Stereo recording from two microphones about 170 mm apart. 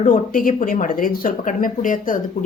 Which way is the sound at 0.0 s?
50° left (ahead or behind).